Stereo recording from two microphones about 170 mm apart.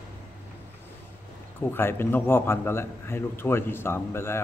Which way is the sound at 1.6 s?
15° left (ahead or behind).